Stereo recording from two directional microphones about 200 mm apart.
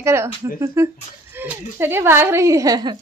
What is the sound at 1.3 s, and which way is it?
A woman's voice, 10° right (ahead or behind).